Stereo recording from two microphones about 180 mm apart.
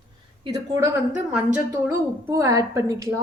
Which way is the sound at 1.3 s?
5° right (ahead or behind).